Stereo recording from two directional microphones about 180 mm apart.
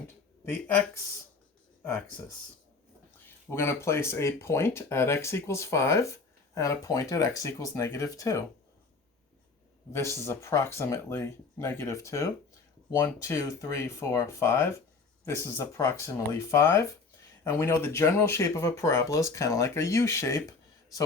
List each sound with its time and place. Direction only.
1.8 s speech: 10° left (ahead or behind)
3.2 s speech: 15° left (ahead or behind)
9.9 s speech: 15° left (ahead or behind)